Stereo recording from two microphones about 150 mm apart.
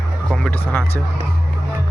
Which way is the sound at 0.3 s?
5° left (ahead or behind).